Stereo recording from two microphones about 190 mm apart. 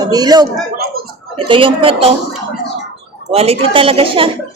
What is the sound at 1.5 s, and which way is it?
Speech, 25° right (ahead or behind).